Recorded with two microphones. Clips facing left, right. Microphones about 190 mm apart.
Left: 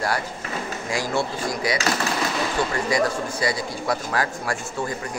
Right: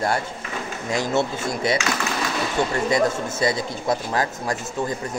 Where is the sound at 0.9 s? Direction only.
20° right (ahead or behind).